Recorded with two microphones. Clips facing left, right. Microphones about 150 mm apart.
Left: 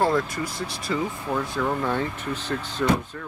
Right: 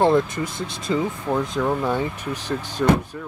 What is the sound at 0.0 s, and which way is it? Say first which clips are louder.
Speech: right 5 dB; 20° right (ahead or behind).